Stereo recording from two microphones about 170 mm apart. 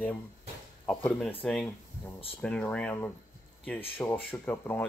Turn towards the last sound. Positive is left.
turn(degrees=10)  # may be behind; listen again after turning